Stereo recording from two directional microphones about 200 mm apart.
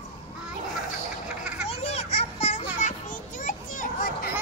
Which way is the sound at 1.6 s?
30° left (ahead or behind).